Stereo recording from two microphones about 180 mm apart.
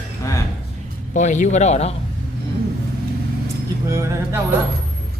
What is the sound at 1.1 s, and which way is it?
Speech, 45° left (ahead or behind).